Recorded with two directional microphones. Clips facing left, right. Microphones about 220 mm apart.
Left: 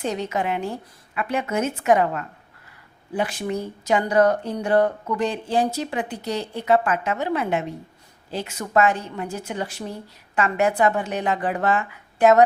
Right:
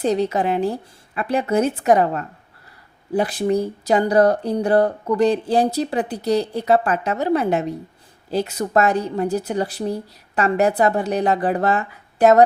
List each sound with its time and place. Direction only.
0.0 s speech: 35° right (ahead or behind)